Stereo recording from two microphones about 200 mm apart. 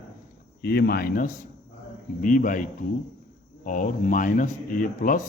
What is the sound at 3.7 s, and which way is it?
Speech, 40° left (ahead or behind).